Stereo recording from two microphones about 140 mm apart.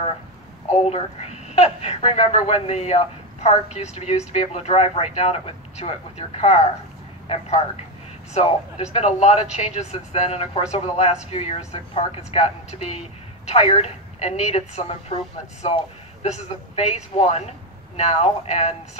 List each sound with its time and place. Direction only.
0.8 s speech: 50° left (ahead or behind)